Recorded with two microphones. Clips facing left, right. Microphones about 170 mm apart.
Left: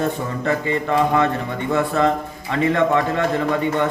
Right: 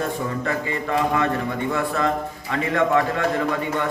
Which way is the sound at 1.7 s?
25° left (ahead or behind).